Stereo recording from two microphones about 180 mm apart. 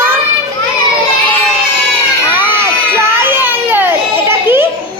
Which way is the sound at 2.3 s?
10° right (ahead or behind).